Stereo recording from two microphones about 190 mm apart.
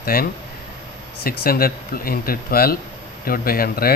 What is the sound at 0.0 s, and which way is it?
Speech, 50° left (ahead or behind).